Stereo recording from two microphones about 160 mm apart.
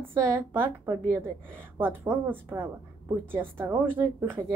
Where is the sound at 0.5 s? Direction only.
20° right (ahead or behind).